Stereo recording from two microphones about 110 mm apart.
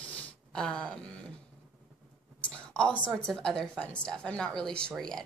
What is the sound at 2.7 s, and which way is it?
A woman's voice, 10° left (ahead or behind).